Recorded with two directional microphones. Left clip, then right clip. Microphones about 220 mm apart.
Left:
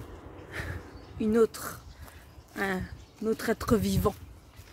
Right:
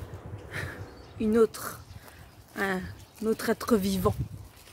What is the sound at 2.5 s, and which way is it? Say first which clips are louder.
Speech: right 1 dB; 5° right (ahead or behind).